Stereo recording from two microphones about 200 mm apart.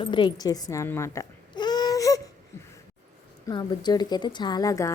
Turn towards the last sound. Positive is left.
turn(degrees=15)  # may be behind; listen again after turning